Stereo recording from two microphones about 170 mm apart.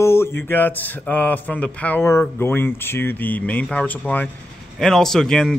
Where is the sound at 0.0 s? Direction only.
15° left (ahead or behind).